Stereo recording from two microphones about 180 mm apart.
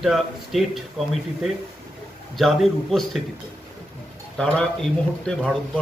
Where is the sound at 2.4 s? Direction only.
Centre (ahead or behind).